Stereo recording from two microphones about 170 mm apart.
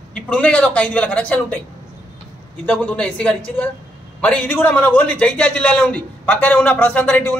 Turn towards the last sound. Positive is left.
turn(degrees=10)  # may be behind; listen again after turning